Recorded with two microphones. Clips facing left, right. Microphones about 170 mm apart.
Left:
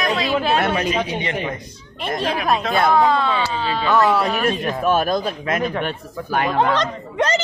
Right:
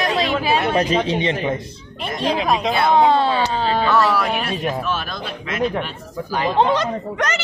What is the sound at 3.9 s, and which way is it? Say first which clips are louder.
Speech: left 3 dB; 20° left (ahead or behind).